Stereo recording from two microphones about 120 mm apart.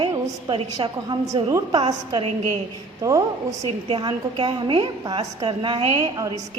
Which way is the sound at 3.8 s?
45° right (ahead or behind).